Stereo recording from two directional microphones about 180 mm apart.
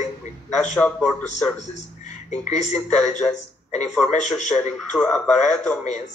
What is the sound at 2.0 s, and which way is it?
Frog, 40° left (ahead or behind).